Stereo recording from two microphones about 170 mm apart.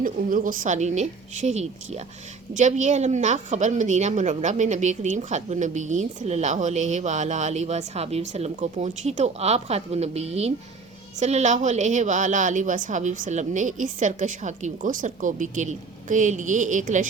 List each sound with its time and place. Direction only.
0.0 s a woman's voice: 55° right (ahead or behind)